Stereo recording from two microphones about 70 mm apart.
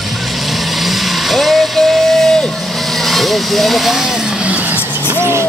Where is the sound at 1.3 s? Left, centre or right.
Centre.